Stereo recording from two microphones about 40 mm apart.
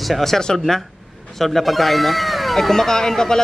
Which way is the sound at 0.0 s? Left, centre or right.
Centre.